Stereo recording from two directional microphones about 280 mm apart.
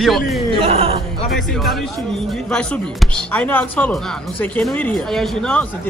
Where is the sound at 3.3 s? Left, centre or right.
Centre.